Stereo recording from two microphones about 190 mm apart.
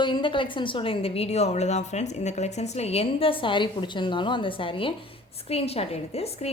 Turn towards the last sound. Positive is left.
turn(degrees=35)  # may be behind; listen again after turning